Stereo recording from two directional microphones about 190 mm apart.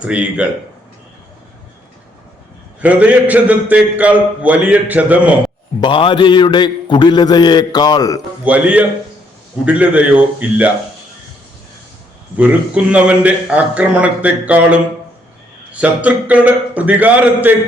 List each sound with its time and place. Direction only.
0.0 s a man's voice: 5° right (ahead or behind)
2.8 s a man's voice: 5° right (ahead or behind)
5.8 s a man's voice: 25° left (ahead or behind)
8.4 s a man's voice: 5° right (ahead or behind)
12.4 s a man's voice: 5° right (ahead or behind)